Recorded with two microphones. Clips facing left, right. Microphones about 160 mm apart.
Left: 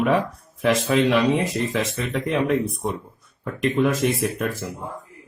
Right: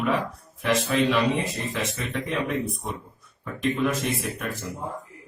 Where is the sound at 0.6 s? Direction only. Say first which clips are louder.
Left 4 dB; 70° left (ahead or behind).